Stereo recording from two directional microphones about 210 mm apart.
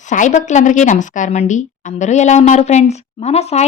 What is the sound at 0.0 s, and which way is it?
A woman's voice, 35° left (ahead or behind).